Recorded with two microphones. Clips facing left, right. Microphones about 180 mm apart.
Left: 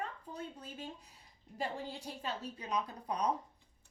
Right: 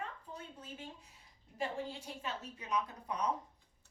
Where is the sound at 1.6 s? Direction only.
35° left (ahead or behind).